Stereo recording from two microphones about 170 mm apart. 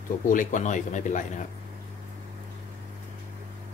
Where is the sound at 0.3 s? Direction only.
50° left (ahead or behind).